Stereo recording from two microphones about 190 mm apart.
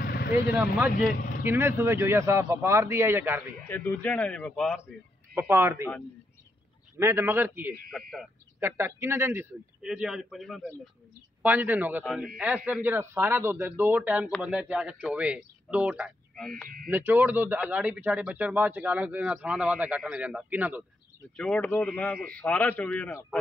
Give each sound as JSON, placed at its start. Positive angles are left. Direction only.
{"t": 0.0, "sound": "vehicle", "side_deg": 55}
{"t": 0.6, "sound": "a man's voice", "side_deg": -5}
{"t": 3.6, "sound": "a man's voice", "side_deg": 10}
{"t": 5.3, "sound": "a man's voice", "side_deg": -10}
{"t": 7.0, "sound": "a man's voice", "side_deg": -15}
{"t": 7.9, "sound": "a man's voice", "side_deg": 0}
{"t": 8.5, "sound": "a man's voice", "side_deg": -15}
{"t": 12.0, "sound": "a man's voice", "side_deg": 5}
{"t": 16.6, "sound": "speech", "side_deg": -50}
{"t": 16.9, "sound": "a man's voice", "side_deg": -10}
{"t": 21.4, "sound": "a man's voice", "side_deg": 5}